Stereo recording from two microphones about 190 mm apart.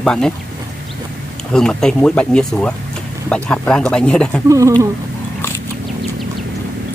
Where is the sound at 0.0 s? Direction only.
5° left (ahead or behind).